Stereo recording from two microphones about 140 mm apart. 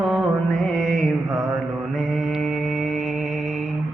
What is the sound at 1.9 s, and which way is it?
Mantra, centre (ahead or behind).